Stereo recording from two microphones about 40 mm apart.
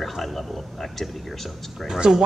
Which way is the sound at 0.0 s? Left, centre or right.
Centre.